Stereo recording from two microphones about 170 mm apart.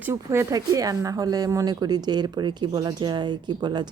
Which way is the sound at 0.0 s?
15° right (ahead or behind).